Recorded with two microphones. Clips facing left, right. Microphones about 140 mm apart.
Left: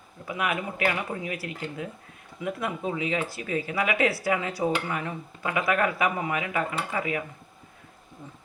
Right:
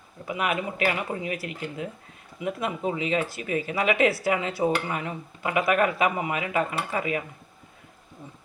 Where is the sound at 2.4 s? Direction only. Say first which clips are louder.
Right 2 dB; 20° right (ahead or behind).